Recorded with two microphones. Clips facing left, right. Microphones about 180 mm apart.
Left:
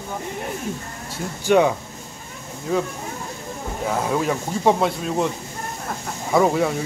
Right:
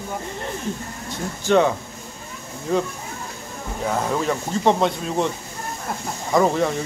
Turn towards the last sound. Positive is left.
turn(degrees=5)  # may be behind; listen again after turning